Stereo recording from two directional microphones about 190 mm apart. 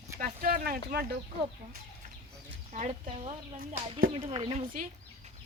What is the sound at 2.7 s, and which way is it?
Speech, 40° right (ahead or behind).